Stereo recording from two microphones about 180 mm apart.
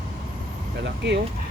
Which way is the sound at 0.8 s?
70° right (ahead or behind).